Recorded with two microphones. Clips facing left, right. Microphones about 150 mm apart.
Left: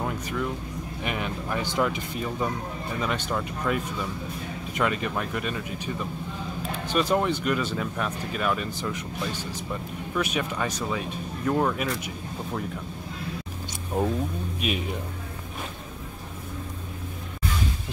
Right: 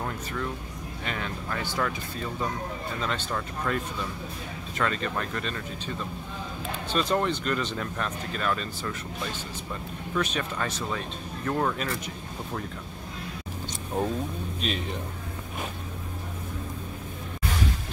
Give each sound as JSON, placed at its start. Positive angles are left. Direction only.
{"t": 0.0, "sound": "music", "side_deg": 10}
{"t": 1.0, "sound": "speech", "side_deg": 15}
{"t": 13.9, "sound": "speech", "side_deg": 10}